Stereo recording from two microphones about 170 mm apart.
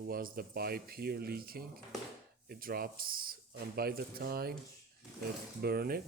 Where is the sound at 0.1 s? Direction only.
60° right (ahead or behind).